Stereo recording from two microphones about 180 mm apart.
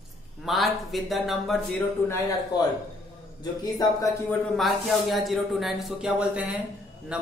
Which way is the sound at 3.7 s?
20° left (ahead or behind).